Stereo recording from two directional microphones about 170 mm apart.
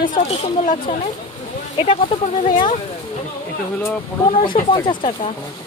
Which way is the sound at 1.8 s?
30° left (ahead or behind).